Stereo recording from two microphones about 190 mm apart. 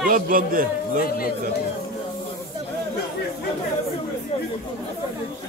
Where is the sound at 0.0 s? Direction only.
50° right (ahead or behind).